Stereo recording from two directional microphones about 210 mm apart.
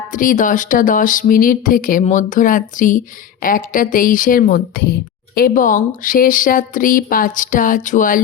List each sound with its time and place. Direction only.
0.1 s a woman's voice: 40° left (ahead or behind)